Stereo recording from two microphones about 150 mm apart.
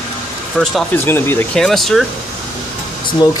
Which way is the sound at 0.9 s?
15° left (ahead or behind).